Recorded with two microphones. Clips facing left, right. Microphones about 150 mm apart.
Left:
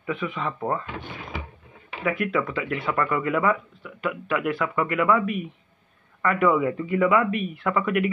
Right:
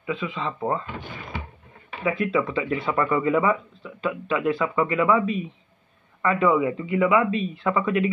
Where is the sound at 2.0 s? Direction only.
25° right (ahead or behind).